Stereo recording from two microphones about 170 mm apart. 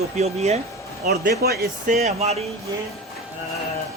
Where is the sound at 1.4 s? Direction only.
65° right (ahead or behind).